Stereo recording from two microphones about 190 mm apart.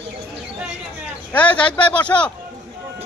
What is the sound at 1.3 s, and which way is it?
Speech, 5° left (ahead or behind).